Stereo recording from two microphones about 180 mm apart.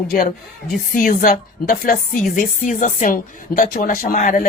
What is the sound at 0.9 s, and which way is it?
A woman's voice, 50° left (ahead or behind).